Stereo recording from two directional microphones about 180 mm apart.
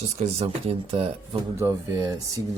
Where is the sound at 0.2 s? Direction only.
35° right (ahead or behind).